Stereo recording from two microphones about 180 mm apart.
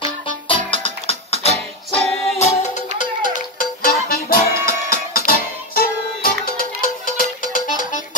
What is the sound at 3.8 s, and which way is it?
Music, 55° left (ahead or behind).